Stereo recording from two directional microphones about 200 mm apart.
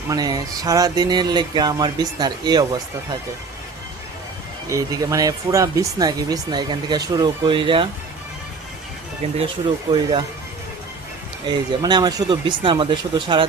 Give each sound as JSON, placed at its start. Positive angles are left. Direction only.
{"t": 0.1, "sound": "speech", "side_deg": -20}
{"t": 4.7, "sound": "speech", "side_deg": -15}
{"t": 9.2, "sound": "speech", "side_deg": -30}
{"t": 11.4, "sound": "speech", "side_deg": -20}